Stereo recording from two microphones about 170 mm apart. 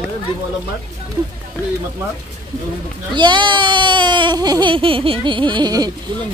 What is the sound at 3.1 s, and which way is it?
Speech, 25° right (ahead or behind).